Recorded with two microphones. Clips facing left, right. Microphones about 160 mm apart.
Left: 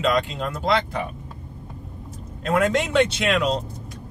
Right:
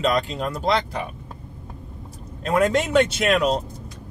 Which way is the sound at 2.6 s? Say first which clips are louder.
Right 2 dB; 45° right (ahead or behind).